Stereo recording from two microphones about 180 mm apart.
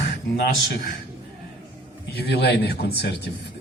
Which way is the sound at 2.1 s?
65° left (ahead or behind).